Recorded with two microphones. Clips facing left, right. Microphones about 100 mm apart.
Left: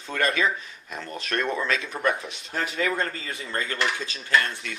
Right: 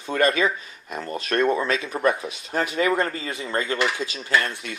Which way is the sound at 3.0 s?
20° right (ahead or behind).